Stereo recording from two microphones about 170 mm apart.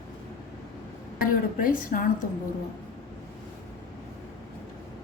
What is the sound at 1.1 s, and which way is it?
Speech, 55° left (ahead or behind).